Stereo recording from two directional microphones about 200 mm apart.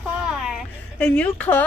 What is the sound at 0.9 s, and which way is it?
Speech, 5° left (ahead or behind).